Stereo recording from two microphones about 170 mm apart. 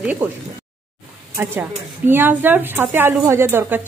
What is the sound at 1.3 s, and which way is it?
A woman's voice, 10° right (ahead or behind).